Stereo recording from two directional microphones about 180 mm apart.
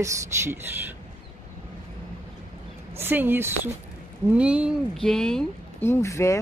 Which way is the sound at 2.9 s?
10° right (ahead or behind).